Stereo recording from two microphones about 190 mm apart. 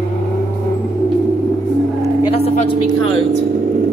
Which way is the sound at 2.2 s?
30° left (ahead or behind).